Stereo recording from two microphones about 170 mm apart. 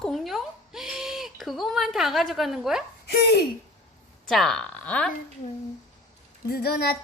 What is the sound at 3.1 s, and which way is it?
Speech, 75° left (ahead or behind).